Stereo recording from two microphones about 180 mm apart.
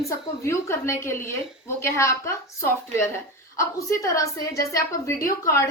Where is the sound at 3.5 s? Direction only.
15° left (ahead or behind).